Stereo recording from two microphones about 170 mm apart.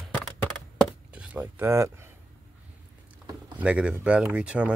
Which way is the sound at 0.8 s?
5° right (ahead or behind).